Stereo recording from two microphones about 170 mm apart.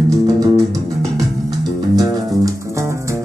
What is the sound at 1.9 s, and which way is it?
Music, 20° right (ahead or behind).